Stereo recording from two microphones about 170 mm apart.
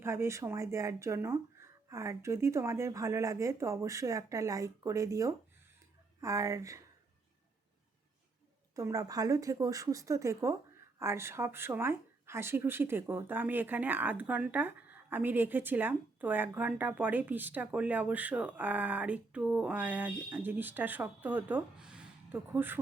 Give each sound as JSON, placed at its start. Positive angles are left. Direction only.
{"t": 0.0, "sound": "a woman's voice", "side_deg": -15}
{"t": 8.7, "sound": "a woman's voice", "side_deg": -20}